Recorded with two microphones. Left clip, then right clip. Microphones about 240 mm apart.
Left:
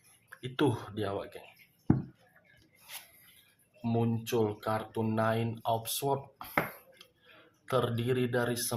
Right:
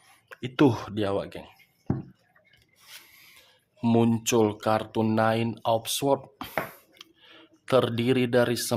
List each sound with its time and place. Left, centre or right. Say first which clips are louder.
0.3 s speech: right 8 dB; right
3.8 s speech: right 9 dB; right
7.0 s cutlery: right 8 dB; right
7.6 s speech: right 8 dB; right